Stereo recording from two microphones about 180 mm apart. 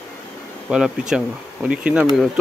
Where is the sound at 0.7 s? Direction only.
5° right (ahead or behind).